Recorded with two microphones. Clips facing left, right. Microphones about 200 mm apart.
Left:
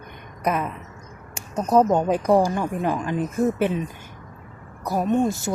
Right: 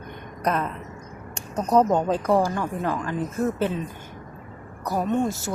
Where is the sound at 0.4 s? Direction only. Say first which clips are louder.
Left 1 dB; 10° left (ahead or behind).